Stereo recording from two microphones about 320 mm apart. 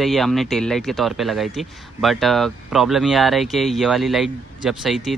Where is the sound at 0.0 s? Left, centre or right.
Centre.